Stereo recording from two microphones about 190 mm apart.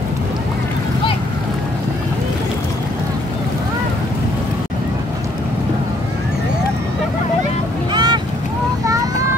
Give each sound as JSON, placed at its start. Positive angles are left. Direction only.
{"t": 7.9, "sound": "honk", "side_deg": -20}